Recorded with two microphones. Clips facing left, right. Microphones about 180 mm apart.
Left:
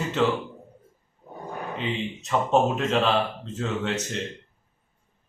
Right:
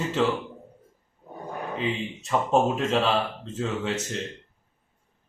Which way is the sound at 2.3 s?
5° right (ahead or behind).